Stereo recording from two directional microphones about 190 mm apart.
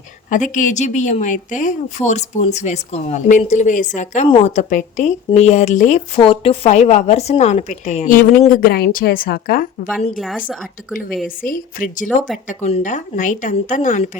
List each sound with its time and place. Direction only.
0.3 s speech: 40° left (ahead or behind)
6.1 s speech: 30° left (ahead or behind); by 9.6 s 50° left (ahead or behind)
10.2 s a woman's voice: centre (ahead or behind)
11.4 s speech: 45° left (ahead or behind)